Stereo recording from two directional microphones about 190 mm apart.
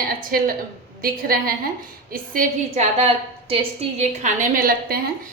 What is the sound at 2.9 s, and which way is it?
A woman's voice, 30° right (ahead or behind).